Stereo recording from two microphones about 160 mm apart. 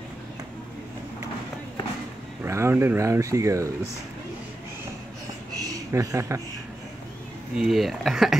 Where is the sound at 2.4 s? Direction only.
15° right (ahead or behind).